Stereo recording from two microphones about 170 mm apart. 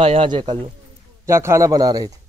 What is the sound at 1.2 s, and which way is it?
Speech, 15° right (ahead or behind).